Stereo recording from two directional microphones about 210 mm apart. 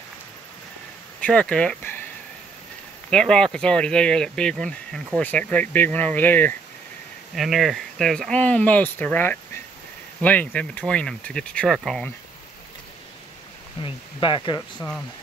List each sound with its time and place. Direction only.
1.2 s speech: 5° left (ahead or behind)
3.1 s speech: 5° left (ahead or behind)
13.8 s speech: 25° left (ahead or behind)